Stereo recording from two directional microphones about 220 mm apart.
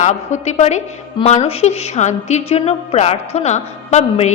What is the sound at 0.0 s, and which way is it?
A woman's voice, 30° left (ahead or behind).